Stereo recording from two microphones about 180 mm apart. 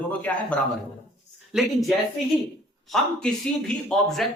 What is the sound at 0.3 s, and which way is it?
Speech, 10° left (ahead or behind).